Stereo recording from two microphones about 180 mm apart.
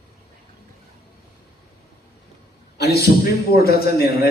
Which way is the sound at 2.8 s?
60° left (ahead or behind).